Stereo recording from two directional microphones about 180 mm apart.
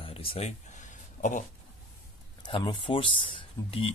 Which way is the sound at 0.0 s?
30° left (ahead or behind).